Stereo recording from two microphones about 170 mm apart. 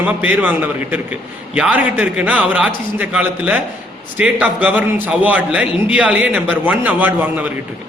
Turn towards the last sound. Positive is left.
turn(degrees=-10)  # may be behind; listen again after turning